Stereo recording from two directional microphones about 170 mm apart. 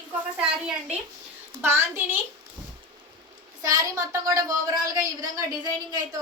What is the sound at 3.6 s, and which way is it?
A woman's voice, 20° right (ahead or behind).